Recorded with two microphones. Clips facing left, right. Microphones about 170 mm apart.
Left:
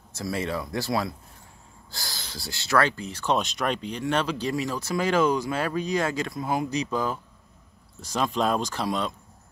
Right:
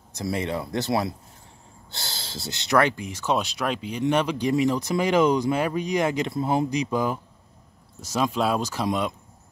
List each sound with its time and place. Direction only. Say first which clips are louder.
0.1 s speech: right 2 dB; 20° right (ahead or behind)
6.7 s speech: right 2 dB; 15° right (ahead or behind)
8.4 s speech: right 1 dB; 5° right (ahead or behind)